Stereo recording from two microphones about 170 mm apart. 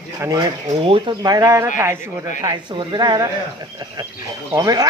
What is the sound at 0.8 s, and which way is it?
A man's voice, 30° right (ahead or behind).